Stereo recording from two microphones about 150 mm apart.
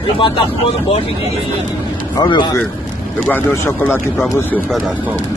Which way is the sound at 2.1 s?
30° left (ahead or behind).